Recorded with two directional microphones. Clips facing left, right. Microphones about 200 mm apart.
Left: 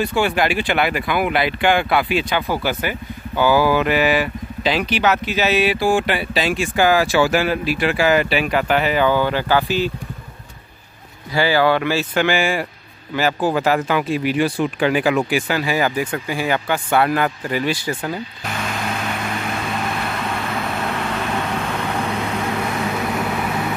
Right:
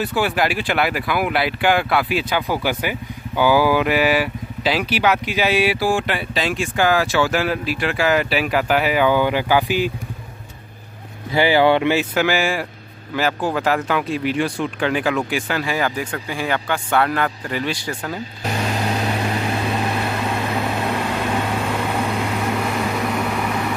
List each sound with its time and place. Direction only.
0.0 s speech: 5° right (ahead or behind)
11.3 s speech: 20° right (ahead or behind)
12.1 s speech: 5° right (ahead or behind)
18.6 s vehicle: 35° right (ahead or behind)
20.2 s vehicle: 15° right (ahead or behind); by 23.6 s 5° left (ahead or behind)